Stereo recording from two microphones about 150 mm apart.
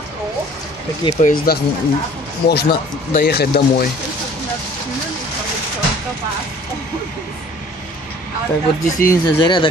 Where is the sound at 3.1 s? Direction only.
90° left.